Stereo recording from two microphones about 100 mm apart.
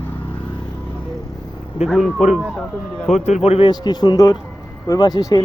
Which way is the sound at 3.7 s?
45° left (ahead or behind).